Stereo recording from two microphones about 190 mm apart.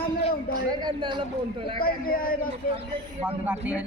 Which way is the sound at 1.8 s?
50° left (ahead or behind).